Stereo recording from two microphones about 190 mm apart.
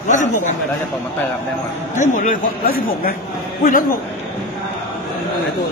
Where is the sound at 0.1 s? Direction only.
40° left (ahead or behind).